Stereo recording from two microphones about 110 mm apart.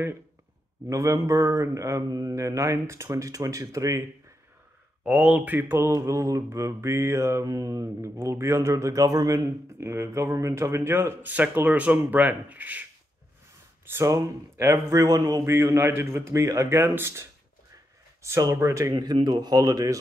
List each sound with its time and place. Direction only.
0.8 s mantra: 30° right (ahead or behind)
5.0 s mantra: 10° right (ahead or behind)
14.0 s speech: 30° right (ahead or behind)
15.6 s mantra: 30° right (ahead or behind)
19.2 s speech: 40° right (ahead or behind)